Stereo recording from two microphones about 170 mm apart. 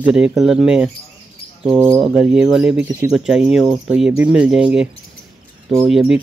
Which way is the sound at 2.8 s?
20° right (ahead or behind).